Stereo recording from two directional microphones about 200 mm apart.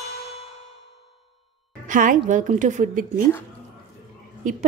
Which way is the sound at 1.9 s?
40° right (ahead or behind).